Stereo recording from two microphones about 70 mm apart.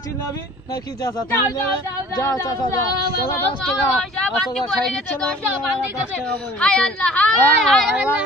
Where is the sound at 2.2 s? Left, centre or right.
Left.